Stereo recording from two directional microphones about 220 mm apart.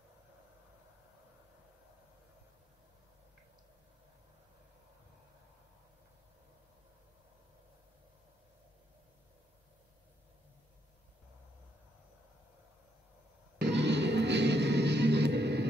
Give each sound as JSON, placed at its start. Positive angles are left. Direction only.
{"t": 13.6, "sound": "music", "side_deg": -50}